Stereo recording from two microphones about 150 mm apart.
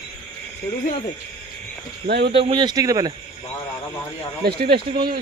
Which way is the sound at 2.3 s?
30° right (ahead or behind).